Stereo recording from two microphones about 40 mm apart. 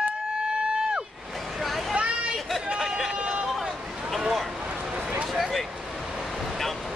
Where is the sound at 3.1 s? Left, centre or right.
Right.